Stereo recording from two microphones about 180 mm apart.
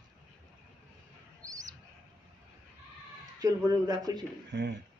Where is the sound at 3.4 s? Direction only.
20° right (ahead or behind).